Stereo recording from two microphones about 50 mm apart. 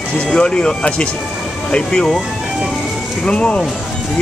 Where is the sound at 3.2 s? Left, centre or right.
Left.